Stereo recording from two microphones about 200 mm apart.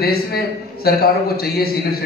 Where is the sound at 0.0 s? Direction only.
50° left (ahead or behind).